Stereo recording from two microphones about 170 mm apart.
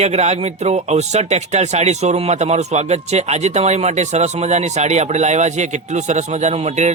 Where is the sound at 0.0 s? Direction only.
40° right (ahead or behind).